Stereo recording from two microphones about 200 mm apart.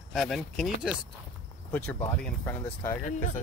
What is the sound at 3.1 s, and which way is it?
Speech, 35° left (ahead or behind).